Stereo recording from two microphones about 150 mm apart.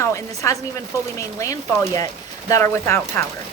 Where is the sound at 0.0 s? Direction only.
20° left (ahead or behind).